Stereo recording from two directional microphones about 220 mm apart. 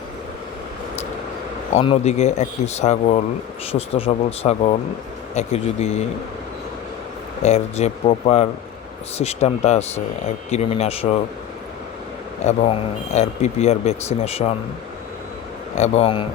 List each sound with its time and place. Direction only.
1.7 s speech: 30° left (ahead or behind)
7.4 s speech: 30° left (ahead or behind)
12.5 s speech: 30° left (ahead or behind)
15.7 s speech: 30° left (ahead or behind)